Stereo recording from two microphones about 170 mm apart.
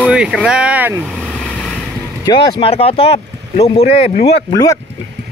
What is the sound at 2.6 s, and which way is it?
Speech, 35° left (ahead or behind).